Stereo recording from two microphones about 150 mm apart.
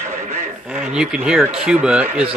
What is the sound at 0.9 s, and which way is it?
Speech, 5° right (ahead or behind).